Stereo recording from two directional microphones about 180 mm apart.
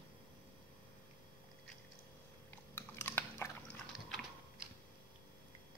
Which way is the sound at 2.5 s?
15° left (ahead or behind).